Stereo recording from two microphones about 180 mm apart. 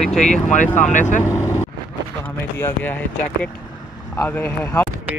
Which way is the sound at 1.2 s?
15° left (ahead or behind).